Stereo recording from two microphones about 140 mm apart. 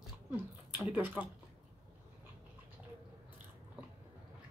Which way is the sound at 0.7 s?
15° right (ahead or behind).